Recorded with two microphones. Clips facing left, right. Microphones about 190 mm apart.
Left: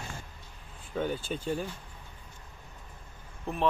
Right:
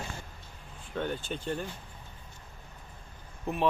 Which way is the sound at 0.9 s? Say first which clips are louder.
Left 2 dB; 5° left (ahead or behind).